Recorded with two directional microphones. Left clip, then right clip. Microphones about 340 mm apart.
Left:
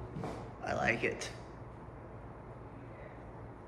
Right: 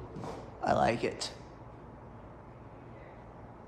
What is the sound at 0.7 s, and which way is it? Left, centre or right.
Speech, centre.